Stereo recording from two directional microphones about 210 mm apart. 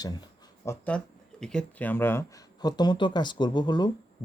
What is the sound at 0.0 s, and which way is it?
Speech, 15° left (ahead or behind).